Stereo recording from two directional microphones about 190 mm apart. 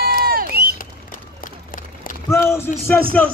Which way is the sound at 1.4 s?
45° left (ahead or behind).